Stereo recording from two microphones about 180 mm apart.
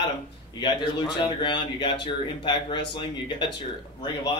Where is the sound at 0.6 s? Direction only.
25° left (ahead or behind).